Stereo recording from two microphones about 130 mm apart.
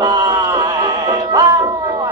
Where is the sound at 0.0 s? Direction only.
30° right (ahead or behind).